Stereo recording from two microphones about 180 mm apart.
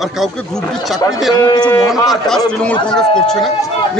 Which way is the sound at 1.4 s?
20° left (ahead or behind).